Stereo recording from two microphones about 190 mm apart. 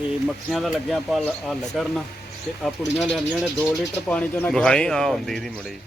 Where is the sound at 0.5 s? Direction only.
Centre (ahead or behind).